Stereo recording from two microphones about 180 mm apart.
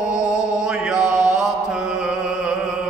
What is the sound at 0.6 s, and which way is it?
Mantra, 5° right (ahead or behind).